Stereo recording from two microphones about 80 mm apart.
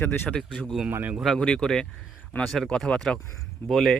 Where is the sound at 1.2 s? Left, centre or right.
Centre.